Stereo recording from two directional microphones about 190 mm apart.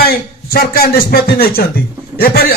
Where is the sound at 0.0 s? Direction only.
55° left (ahead or behind).